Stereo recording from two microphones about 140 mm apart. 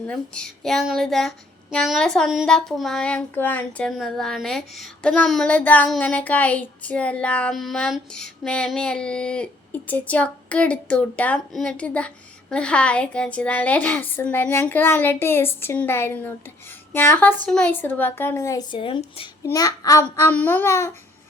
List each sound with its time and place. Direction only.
0.0 s speech: 5° left (ahead or behind)
5.9 s child singing: 10° left (ahead or behind); by 19.3 s 40° left (ahead or behind)
19.4 s a child's voice: 25° left (ahead or behind)